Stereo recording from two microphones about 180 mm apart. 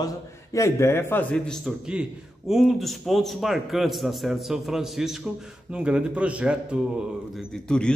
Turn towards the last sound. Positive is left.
turn(degrees=5)  # may be behind; listen again after turning